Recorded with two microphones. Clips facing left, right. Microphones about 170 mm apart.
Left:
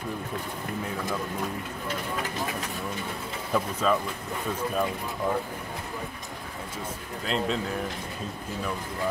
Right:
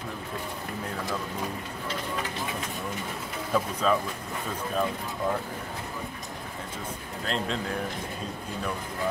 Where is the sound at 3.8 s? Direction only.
Centre (ahead or behind).